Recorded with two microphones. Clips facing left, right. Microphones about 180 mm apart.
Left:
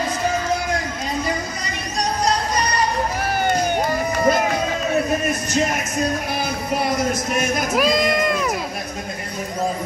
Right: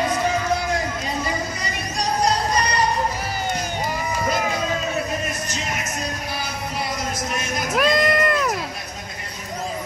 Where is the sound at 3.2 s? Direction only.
60° left (ahead or behind).